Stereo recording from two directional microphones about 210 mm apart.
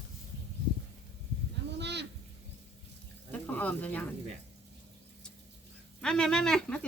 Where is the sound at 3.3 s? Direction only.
5° left (ahead or behind).